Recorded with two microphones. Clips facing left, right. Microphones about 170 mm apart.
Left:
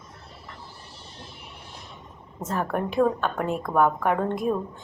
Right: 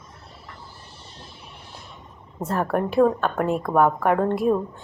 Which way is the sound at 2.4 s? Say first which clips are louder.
Right 4 dB; 35° right (ahead or behind).